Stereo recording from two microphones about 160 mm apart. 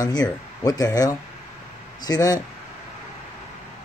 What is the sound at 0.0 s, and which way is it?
Speech, 25° left (ahead or behind).